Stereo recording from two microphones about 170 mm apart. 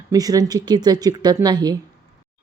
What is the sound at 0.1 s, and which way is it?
Speech, 20° right (ahead or behind).